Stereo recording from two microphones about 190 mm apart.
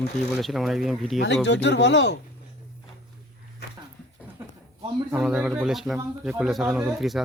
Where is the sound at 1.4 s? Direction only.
65° left (ahead or behind).